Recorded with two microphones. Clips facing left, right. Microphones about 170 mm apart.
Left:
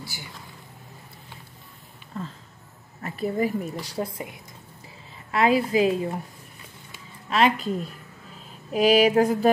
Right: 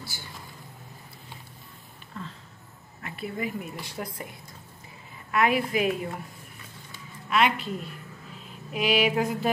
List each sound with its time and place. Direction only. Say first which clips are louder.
0.0 s speech: left 3 dB; 15° left (ahead or behind)
3.0 s a woman's voice: left 8 dB; 40° left (ahead or behind)
5.3 s a woman's voice: left 4 dB; 30° left (ahead or behind)
7.2 s a woman's voice: left 3 dB; 35° left (ahead or behind)
7.6 s a sound: left 5 dB; 40° left (ahead or behind)